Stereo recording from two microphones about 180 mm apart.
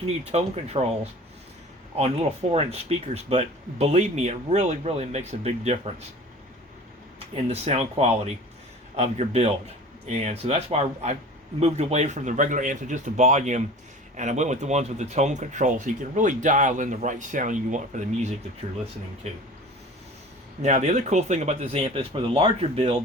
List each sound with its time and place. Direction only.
0.3 s speech: 35° right (ahead or behind)
2.0 s speech: 35° right (ahead or behind)
7.4 s speech: 35° right (ahead or behind)
20.6 s speech: 40° right (ahead or behind)